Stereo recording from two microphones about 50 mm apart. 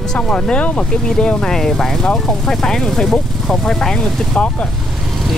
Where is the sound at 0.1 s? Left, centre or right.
Centre.